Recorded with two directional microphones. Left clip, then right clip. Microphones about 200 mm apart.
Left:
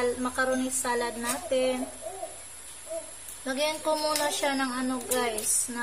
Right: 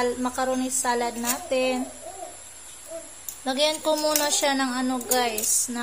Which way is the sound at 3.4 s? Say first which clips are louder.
Right 5 dB; 15° right (ahead or behind).